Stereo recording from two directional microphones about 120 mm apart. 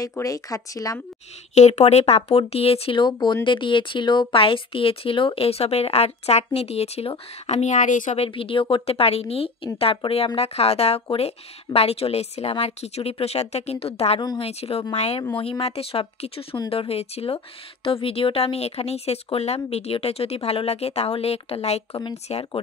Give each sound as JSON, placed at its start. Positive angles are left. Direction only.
{"t": 0.2, "sound": "speech", "side_deg": 30}
{"t": 1.5, "sound": "speech", "side_deg": 70}
{"t": 3.0, "sound": "speech", "side_deg": 40}
{"t": 8.3, "sound": "a woman's voice", "side_deg": 50}